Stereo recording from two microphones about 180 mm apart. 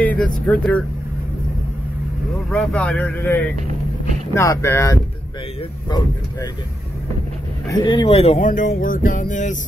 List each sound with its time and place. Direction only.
0.0 s speech: 10° left (ahead or behind)
2.5 s speech: 5° left (ahead or behind); by 6.5 s 25° left (ahead or behind)
7.6 s speech: 25° left (ahead or behind); by 9.6 s 45° left (ahead or behind)